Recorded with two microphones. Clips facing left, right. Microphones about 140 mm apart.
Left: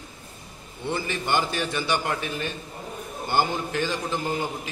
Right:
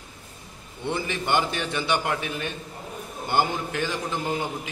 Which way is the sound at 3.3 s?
15° right (ahead or behind).